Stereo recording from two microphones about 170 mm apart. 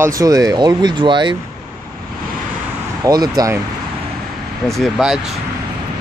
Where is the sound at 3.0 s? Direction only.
25° right (ahead or behind).